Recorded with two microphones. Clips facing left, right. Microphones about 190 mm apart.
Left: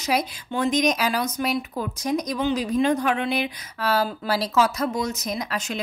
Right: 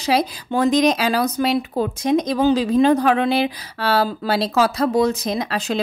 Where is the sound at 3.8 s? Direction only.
30° right (ahead or behind).